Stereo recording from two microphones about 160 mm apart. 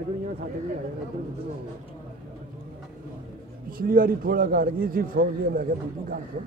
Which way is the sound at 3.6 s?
65° right (ahead or behind).